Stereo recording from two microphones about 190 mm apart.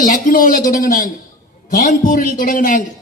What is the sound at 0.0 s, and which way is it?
A man's voice, 45° left (ahead or behind).